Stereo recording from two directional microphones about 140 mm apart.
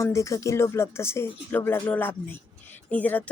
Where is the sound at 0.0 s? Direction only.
20° left (ahead or behind).